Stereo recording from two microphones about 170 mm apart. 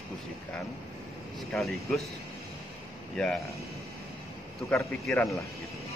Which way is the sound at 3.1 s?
5° left (ahead or behind).